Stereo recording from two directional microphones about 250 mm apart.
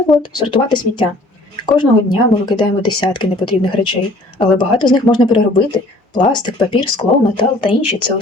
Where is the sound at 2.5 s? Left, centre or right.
Centre.